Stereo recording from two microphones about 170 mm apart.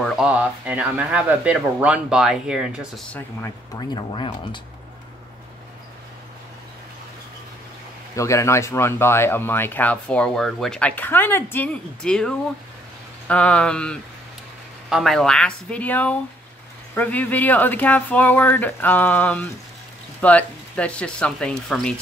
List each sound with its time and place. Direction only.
0.0 s speech: 5° right (ahead or behind)
3.1 s speech: 15° left (ahead or behind); by 4.6 s 30° left (ahead or behind)
8.2 s speech: 15° left (ahead or behind)